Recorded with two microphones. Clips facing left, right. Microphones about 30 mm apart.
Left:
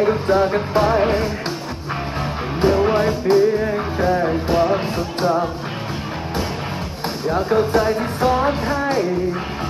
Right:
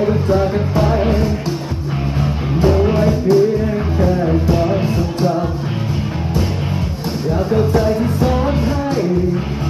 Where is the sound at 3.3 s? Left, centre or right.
Left.